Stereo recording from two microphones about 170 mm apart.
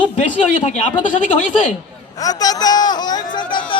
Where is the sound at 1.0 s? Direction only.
50° left (ahead or behind).